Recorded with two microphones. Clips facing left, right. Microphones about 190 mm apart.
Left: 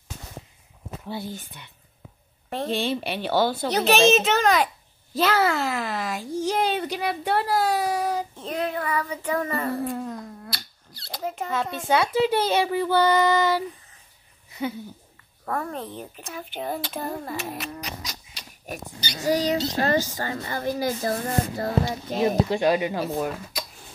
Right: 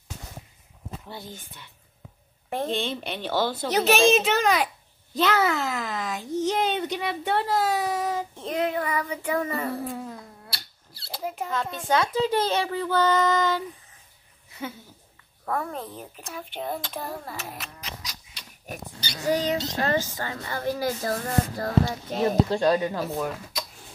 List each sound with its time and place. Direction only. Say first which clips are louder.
1.0 s speech: left 11 dB; 10° left (ahead or behind)
2.7 s a child's voice: left 3 dB; 10° left (ahead or behind)
8.7 s a child's voice: even; 10° right (ahead or behind); by 13.7 s 10° left (ahead or behind)
15.4 s a woman's voice: even; centre (ahead or behind)
17.8 s livestock: left 4 dB; 40° left (ahead or behind)
18.9 s speech: left 2 dB; 15° left (ahead or behind)
19.2 s a child's voice: left 2 dB; 35° left (ahead or behind)
20.6 s speech: left 1 dB; 15° left (ahead or behind)
21.2 s music: left 1 dB; 25° left (ahead or behind)
22.1 s speech: left 1 dB; 15° left (ahead or behind)